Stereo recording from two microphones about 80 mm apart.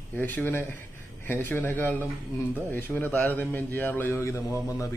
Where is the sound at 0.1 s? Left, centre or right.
Left.